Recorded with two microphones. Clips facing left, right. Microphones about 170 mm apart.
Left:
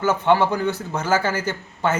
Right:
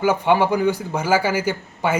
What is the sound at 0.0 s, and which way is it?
A man's voice, 10° right (ahead or behind).